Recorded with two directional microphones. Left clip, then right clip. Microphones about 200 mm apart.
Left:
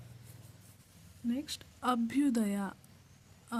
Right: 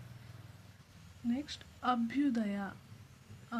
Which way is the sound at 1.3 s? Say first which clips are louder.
Left 1 dB; 50° left (ahead or behind).